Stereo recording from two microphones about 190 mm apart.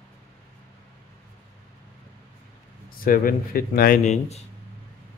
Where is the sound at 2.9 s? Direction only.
50° left (ahead or behind).